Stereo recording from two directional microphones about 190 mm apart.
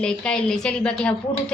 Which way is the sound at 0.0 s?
5° left (ahead or behind).